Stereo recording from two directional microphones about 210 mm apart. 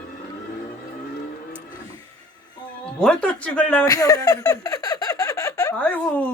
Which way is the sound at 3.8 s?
15° left (ahead or behind).